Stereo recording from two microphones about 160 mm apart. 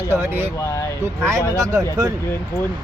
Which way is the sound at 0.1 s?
15° right (ahead or behind).